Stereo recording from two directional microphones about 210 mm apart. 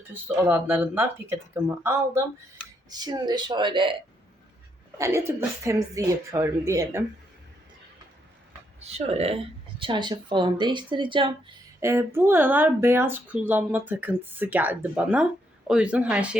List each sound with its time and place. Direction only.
0.1 s speech: 10° right (ahead or behind)
4.9 s speech: 15° right (ahead or behind)
8.8 s speech: 30° right (ahead or behind)
11.8 s speech: 10° right (ahead or behind)